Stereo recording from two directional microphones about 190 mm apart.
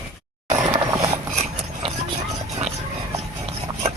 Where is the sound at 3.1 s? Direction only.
30° right (ahead or behind).